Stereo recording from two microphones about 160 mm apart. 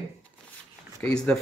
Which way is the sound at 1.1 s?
5° left (ahead or behind).